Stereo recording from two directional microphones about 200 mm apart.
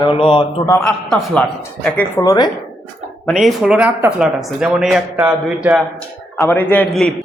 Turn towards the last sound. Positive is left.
turn(degrees=5)  # may be behind; listen again after turning